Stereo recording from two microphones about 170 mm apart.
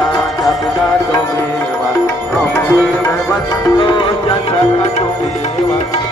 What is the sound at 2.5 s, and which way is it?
Music, 15° left (ahead or behind).